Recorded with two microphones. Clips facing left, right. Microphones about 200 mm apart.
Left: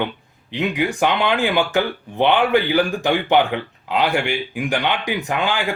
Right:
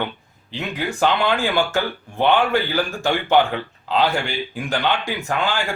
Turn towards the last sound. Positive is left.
turn(degrees=15)  # may be behind; listen again after turning